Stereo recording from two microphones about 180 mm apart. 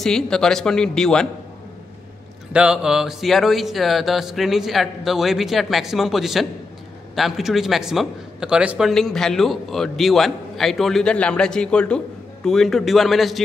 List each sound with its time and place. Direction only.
0.0 s a man's voice: 5° left (ahead or behind)
2.5 s a man's voice: 5° right (ahead or behind)